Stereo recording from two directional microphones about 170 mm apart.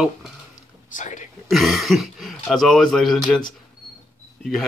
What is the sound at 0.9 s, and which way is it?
Speech, 50° left (ahead or behind).